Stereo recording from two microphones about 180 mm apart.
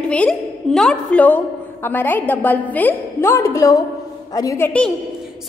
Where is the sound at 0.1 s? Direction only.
5° left (ahead or behind).